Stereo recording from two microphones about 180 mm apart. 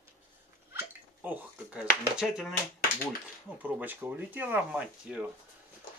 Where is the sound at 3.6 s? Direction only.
10° right (ahead or behind).